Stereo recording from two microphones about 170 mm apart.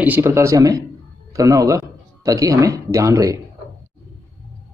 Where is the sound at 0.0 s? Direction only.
10° right (ahead or behind).